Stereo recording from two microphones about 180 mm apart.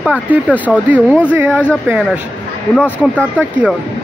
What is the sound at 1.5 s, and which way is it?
Speech, 10° left (ahead or behind).